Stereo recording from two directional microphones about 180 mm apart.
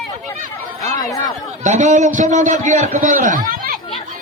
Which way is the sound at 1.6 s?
40° right (ahead or behind).